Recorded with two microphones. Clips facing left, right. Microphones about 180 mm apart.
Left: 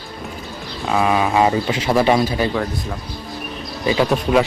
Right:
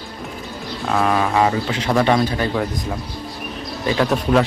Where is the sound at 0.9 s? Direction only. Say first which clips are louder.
Left 1 dB; 5° left (ahead or behind).